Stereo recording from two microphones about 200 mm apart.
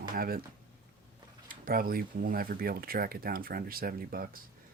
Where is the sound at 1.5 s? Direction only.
45° right (ahead or behind).